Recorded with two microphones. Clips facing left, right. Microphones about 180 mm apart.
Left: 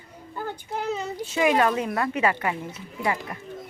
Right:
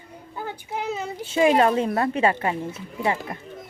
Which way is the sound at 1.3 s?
30° right (ahead or behind).